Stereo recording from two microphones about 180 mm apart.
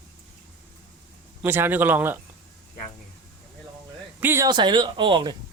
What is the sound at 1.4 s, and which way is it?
Speech, 10° right (ahead or behind).